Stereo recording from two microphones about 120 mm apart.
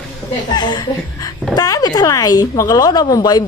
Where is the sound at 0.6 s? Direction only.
35° left (ahead or behind).